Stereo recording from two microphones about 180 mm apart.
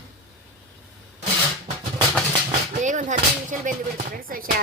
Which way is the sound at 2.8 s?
45° right (ahead or behind).